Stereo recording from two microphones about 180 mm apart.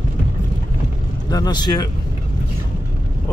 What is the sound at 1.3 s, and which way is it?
Speech, 20° left (ahead or behind).